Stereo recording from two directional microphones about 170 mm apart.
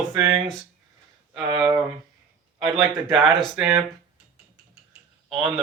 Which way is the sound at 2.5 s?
Centre (ahead or behind).